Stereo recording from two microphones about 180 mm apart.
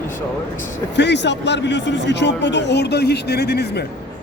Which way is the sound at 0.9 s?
75° left (ahead or behind).